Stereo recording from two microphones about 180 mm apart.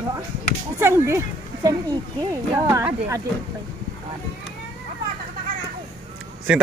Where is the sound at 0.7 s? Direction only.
15° right (ahead or behind).